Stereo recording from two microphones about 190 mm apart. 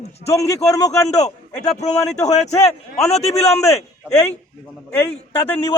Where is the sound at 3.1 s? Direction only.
35° left (ahead or behind).